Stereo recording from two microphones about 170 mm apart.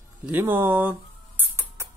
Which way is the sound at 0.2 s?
10° right (ahead or behind).